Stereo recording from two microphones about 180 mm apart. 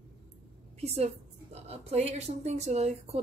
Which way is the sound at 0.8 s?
35° right (ahead or behind).